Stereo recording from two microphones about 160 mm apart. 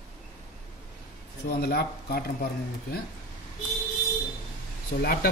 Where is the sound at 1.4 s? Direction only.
75° left (ahead or behind).